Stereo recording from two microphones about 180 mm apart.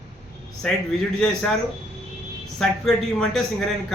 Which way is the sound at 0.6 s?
5° left (ahead or behind).